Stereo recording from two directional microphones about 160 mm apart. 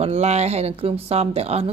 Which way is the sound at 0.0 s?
40° right (ahead or behind).